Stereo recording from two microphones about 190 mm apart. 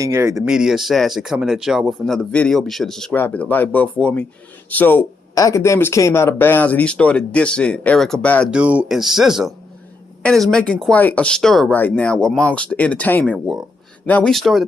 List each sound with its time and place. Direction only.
0.0 s speech: 20° right (ahead or behind)
0.5 s speech: centre (ahead or behind)
8.5 s speech: 5° right (ahead or behind)